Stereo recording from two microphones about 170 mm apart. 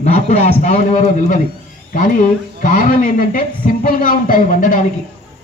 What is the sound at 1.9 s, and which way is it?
Speech, 50° left (ahead or behind).